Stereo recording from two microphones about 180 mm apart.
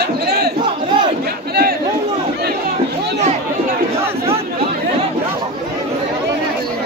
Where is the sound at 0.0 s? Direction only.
65° right (ahead or behind).